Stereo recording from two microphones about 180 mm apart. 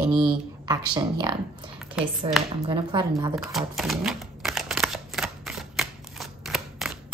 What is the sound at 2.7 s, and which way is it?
Speech, 25° right (ahead or behind).